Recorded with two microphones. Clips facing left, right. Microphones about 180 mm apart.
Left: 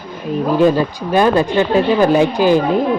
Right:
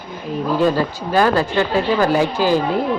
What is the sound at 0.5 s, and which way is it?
Speech, 15° left (ahead or behind).